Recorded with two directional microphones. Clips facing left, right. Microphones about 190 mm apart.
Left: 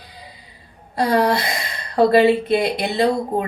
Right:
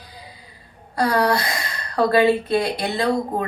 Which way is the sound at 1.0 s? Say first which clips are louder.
Left 2 dB; 20° left (ahead or behind).